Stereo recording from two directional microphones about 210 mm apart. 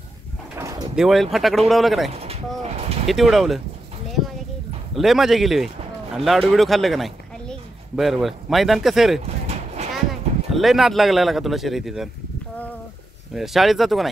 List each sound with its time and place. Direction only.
0.6 s bird: 15° right (ahead or behind)
0.9 s speech: centre (ahead or behind)
2.0 s speech: 30° right (ahead or behind)
2.6 s a sound: 30° right (ahead or behind)
3.1 s speech: centre (ahead or behind)
4.9 s speech: centre (ahead or behind)
9.2 s vehicle: 30° right (ahead or behind)
10.5 s speech: centre (ahead or behind)
13.3 s speech: centre (ahead or behind)